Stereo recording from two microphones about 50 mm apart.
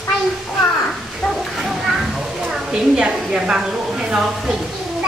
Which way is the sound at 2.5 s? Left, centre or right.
Centre.